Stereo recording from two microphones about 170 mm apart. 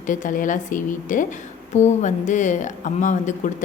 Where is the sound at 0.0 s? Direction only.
50° left (ahead or behind).